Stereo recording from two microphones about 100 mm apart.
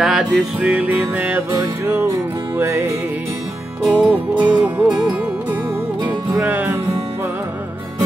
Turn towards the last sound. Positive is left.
turn(degrees=-20)  # may be behind; listen again after turning